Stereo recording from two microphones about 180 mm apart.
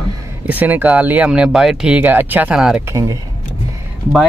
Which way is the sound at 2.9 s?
20° right (ahead or behind).